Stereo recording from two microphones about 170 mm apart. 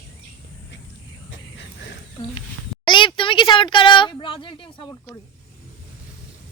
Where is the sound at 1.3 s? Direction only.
90° left.